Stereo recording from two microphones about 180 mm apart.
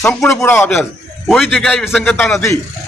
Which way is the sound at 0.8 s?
Centre (ahead or behind).